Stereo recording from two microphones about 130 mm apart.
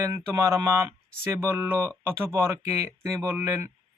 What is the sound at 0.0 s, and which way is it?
Speech, 25° right (ahead or behind).